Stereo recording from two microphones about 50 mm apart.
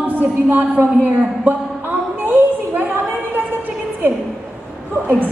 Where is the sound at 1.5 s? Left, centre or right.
Right.